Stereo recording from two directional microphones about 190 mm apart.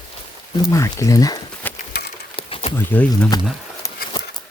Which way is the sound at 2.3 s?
30° left (ahead or behind).